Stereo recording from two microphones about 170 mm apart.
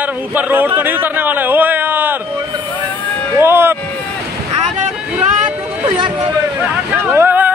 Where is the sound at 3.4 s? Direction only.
15° right (ahead or behind).